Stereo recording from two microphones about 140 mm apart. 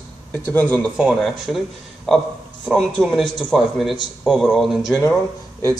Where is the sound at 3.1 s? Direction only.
Centre (ahead or behind).